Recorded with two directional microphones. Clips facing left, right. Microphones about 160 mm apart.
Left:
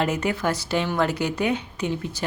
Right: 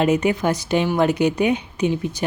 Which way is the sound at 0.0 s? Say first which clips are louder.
Right 5 dB; 20° right (ahead or behind).